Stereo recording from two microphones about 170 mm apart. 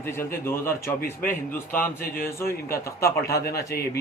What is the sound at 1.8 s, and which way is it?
Mantra, 55° left (ahead or behind).